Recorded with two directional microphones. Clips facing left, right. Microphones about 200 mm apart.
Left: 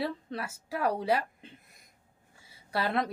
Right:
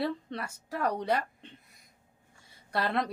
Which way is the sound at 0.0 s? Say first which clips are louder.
Right 1 dB; centre (ahead or behind).